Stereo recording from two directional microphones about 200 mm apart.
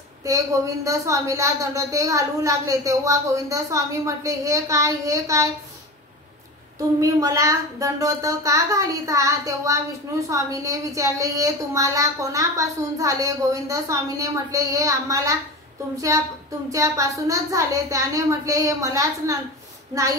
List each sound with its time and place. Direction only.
0.2 s a woman's voice: 15° right (ahead or behind)
7.0 s a woman's voice: 15° right (ahead or behind)
16.7 s a woman's voice: 15° right (ahead or behind)